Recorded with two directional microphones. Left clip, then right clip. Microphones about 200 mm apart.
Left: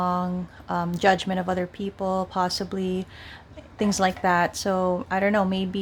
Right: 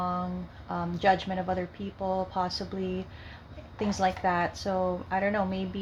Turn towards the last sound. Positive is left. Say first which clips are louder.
# left 6 dB
turn(degrees=50)  # may be behind; listen again after turning